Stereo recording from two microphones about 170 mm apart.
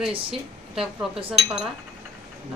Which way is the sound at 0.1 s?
30° right (ahead or behind).